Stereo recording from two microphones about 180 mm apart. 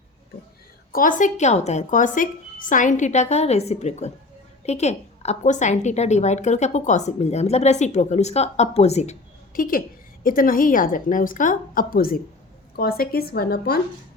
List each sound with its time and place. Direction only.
0.9 s a woman's voice: 45° left (ahead or behind)
9.6 s a woman's voice: 50° left (ahead or behind)